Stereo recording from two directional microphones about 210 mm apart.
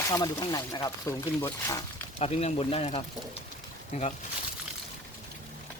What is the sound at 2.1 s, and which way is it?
Speech, 30° left (ahead or behind).